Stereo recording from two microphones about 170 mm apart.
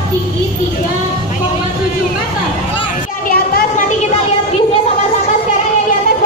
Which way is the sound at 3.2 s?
60° left (ahead or behind).